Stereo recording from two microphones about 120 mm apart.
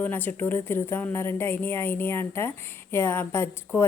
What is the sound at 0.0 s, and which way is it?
A woman's voice, 15° left (ahead or behind).